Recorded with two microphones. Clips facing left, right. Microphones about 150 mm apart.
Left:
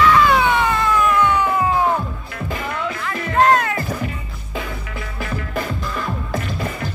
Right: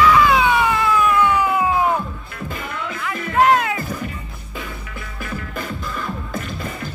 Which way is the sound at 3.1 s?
10° right (ahead or behind).